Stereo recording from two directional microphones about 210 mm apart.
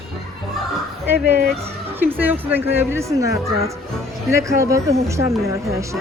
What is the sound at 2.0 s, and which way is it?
A woman's voice, 10° right (ahead or behind).